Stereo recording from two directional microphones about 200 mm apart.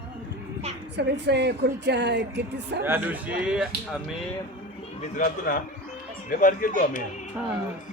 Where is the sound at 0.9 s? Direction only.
60° right (ahead or behind).